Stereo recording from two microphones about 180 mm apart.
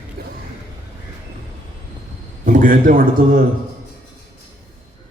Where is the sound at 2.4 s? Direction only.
50° right (ahead or behind).